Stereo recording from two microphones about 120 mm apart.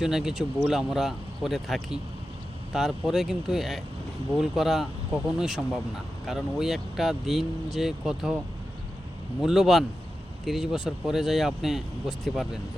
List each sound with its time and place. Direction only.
0.0 s speech: 5° right (ahead or behind)
9.4 s speech: centre (ahead or behind)